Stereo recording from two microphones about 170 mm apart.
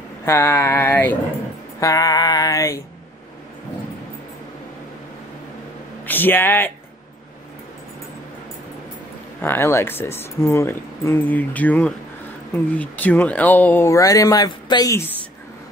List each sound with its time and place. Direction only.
0.2 s speech: 15° left (ahead or behind)
1.8 s a sound: 20° left (ahead or behind)
6.0 s speech: 10° left (ahead or behind)
9.4 s speech: 15° left (ahead or behind)